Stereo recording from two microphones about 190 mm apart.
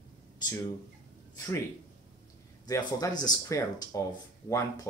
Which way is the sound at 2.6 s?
20° left (ahead or behind).